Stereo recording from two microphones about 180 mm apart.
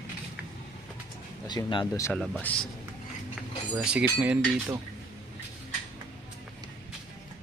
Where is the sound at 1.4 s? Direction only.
25° left (ahead or behind).